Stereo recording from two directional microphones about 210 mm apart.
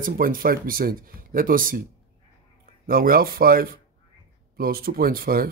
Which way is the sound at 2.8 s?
45° right (ahead or behind).